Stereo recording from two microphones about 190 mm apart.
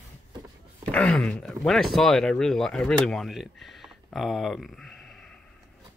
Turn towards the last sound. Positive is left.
turn(degrees=0)  # may be behind; listen again after turning